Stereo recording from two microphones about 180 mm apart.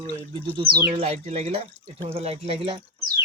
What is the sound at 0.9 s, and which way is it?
Speech, 35° right (ahead or behind).